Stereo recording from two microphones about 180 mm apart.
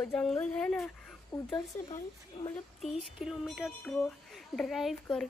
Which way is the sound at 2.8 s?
Centre (ahead or behind).